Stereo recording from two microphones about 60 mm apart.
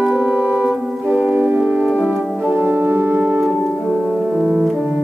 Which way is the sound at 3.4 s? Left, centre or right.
Centre.